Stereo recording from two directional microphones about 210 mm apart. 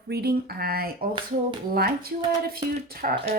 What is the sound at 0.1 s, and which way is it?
Speech, 50° right (ahead or behind).